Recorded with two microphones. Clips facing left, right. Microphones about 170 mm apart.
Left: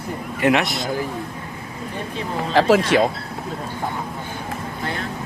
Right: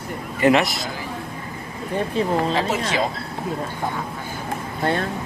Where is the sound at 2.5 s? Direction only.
90° left.